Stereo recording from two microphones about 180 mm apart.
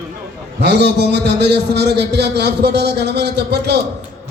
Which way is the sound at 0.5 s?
70° right (ahead or behind).